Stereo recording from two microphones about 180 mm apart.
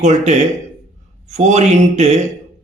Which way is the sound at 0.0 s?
40° right (ahead or behind).